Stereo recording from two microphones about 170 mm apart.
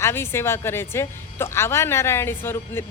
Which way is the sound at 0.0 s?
15° left (ahead or behind).